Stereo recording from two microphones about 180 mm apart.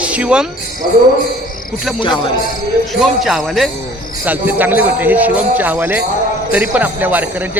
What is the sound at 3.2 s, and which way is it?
Speech, centre (ahead or behind).